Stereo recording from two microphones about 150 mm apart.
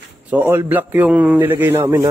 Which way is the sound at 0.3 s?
15° right (ahead or behind).